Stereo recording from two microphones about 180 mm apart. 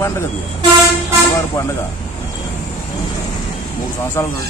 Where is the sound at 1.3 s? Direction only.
15° left (ahead or behind).